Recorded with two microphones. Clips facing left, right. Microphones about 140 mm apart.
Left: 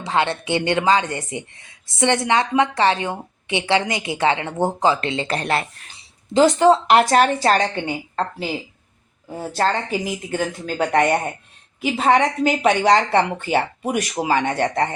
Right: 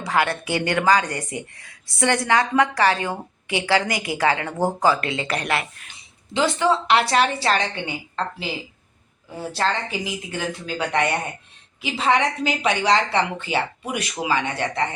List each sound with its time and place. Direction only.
0.0 s a woman's voice: 25° left (ahead or behind)
6.3 s speech: 45° left (ahead or behind)
9.5 s speech: 45° left (ahead or behind)